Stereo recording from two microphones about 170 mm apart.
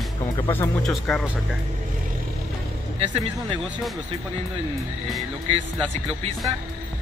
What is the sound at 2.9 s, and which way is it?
Speech, 35° right (ahead or behind).